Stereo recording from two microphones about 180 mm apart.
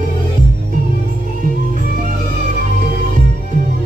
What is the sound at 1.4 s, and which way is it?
Music, 45° right (ahead or behind).